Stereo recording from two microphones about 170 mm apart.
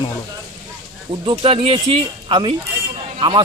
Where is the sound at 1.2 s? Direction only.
30° right (ahead or behind).